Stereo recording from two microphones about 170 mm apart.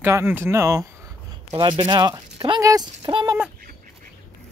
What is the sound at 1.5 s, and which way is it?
Speech, 30° right (ahead or behind).